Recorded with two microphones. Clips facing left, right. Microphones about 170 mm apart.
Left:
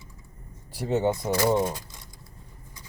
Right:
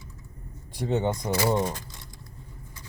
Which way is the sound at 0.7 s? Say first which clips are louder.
Left 2 dB; 5° left (ahead or behind).